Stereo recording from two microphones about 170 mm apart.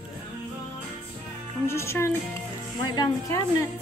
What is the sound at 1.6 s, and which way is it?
A woman's voice, 15° left (ahead or behind).